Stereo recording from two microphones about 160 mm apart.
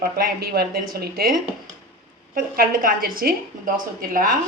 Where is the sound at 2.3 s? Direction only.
60° right (ahead or behind).